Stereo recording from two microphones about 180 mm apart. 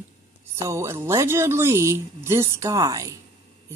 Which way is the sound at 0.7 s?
15° right (ahead or behind).